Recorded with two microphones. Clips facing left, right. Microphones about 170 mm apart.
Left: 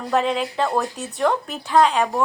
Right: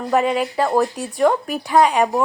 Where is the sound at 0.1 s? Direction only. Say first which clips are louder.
Right 3 dB; 5° right (ahead or behind).